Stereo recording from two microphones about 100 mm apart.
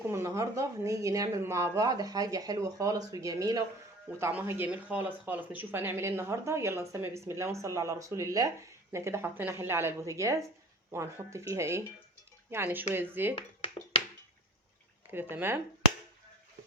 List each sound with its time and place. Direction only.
0.1 s speech: 30° right (ahead or behind)
4.2 s speech: 25° right (ahead or behind)
15.1 s speech: 20° right (ahead or behind)